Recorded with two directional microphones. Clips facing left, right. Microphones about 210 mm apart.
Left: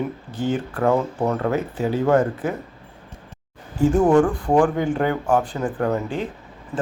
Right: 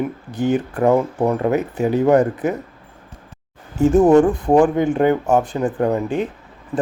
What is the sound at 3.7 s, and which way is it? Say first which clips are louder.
Speech: right 4 dB; 25° right (ahead or behind).